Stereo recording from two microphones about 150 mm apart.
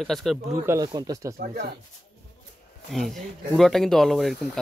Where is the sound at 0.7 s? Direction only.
25° right (ahead or behind).